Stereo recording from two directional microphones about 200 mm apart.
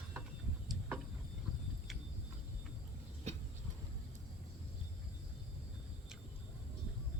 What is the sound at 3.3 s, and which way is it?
Vehicle, 35° right (ahead or behind).